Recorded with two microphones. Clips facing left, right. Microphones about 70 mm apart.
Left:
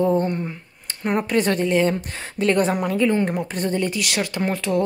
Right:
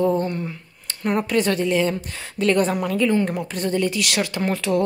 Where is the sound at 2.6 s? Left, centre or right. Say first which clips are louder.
Even; centre.